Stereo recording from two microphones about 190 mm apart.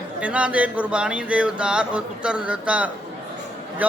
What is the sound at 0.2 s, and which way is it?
A man's voice, 5° right (ahead or behind).